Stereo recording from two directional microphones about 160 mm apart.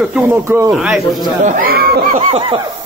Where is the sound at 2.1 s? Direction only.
35° right (ahead or behind).